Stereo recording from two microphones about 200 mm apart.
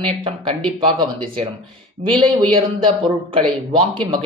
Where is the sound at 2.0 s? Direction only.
25° right (ahead or behind).